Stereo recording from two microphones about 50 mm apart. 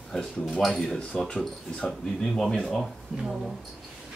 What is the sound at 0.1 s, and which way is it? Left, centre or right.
Speech, centre.